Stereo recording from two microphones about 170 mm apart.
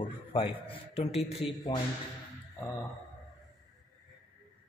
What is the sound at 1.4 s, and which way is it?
Speech, 25° left (ahead or behind).